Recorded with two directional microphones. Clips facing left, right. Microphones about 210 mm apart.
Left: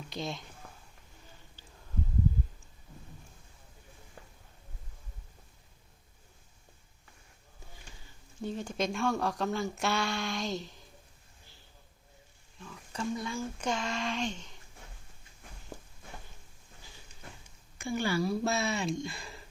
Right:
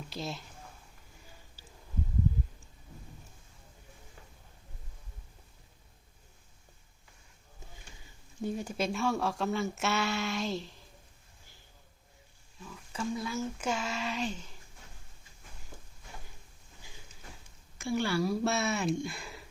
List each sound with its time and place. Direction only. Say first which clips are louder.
0.1 s speech: left 2 dB; 5° right (ahead or behind)
0.6 s a sound: left 1 dB; 60° left (ahead or behind)
1.6 s a sound: right 1 dB; 10° right (ahead or behind)
8.4 s speech: even; 10° right (ahead or behind)
12.5 s speech: even; 5° right (ahead or behind)
17.7 s a woman's voice: right 1 dB; centre (ahead or behind)